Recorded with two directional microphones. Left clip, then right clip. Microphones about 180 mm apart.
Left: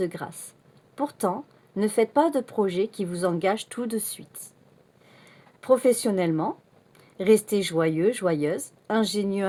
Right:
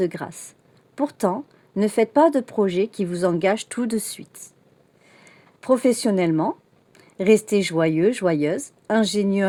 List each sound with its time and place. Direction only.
0.0 s speech: 50° right (ahead or behind)